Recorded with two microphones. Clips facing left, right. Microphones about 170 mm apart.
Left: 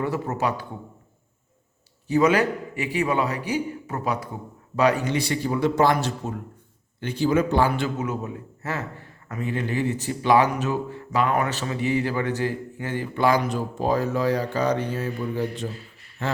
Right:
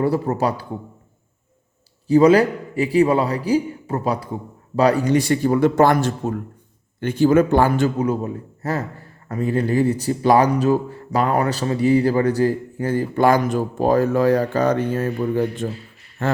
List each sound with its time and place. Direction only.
0.0 s a man's voice: 35° right (ahead or behind)
2.0 s a man's voice: 35° right (ahead or behind); by 16.4 s 50° right (ahead or behind)